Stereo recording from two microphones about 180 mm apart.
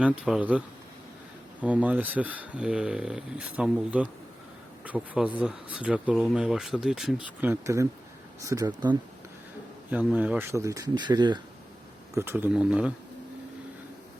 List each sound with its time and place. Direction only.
0.0 s speech: 5° right (ahead or behind)
1.6 s speech: 10° right (ahead or behind)
7.5 s speech: 15° right (ahead or behind)
9.9 s speech: 10° right (ahead or behind); by 11.3 s 25° right (ahead or behind)
12.1 s speech: 15° right (ahead or behind)